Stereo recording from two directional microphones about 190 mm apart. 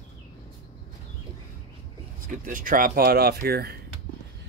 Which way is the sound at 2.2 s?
45° right (ahead or behind).